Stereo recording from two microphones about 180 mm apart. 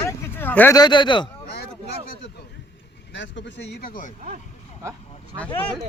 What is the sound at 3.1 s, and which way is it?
Speech, 90° left.